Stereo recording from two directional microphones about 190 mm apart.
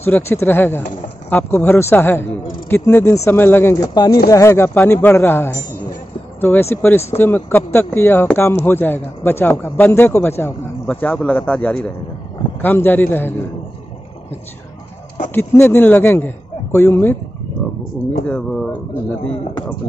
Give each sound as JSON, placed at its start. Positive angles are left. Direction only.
{"t": 0.0, "sound": "a man's voice", "side_deg": 10}
{"t": 15.3, "sound": "a man's voice", "side_deg": 10}
{"t": 18.2, "sound": "speech", "side_deg": 5}